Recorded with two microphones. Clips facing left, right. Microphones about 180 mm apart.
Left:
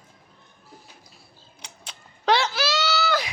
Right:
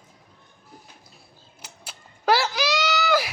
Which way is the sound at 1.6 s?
5° right (ahead or behind).